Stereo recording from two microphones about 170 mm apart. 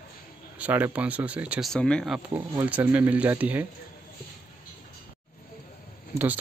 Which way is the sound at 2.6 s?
10° right (ahead or behind).